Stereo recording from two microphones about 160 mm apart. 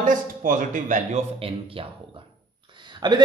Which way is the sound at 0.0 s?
55° right (ahead or behind).